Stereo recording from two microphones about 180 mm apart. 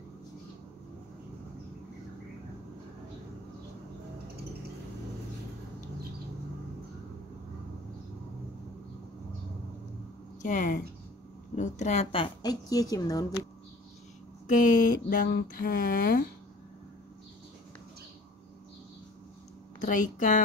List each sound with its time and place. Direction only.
10.4 s a woman's voice: 45° left (ahead or behind); by 13.3 s 20° left (ahead or behind)
14.5 s speech: 45° left (ahead or behind)
19.8 s speech: 45° left (ahead or behind)